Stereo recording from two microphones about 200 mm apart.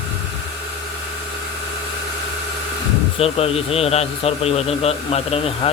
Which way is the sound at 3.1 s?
30° left (ahead or behind).